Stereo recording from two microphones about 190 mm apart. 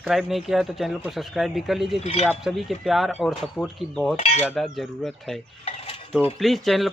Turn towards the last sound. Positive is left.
turn(degrees=0)  # may be behind; listen again after turning